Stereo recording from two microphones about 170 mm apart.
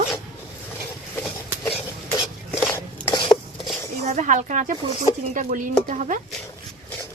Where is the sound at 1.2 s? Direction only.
15° left (ahead or behind).